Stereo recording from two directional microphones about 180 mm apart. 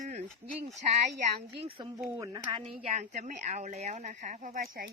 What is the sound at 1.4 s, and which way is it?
Speech, 30° right (ahead or behind).